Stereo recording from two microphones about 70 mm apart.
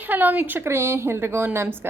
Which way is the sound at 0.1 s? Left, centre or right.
Right.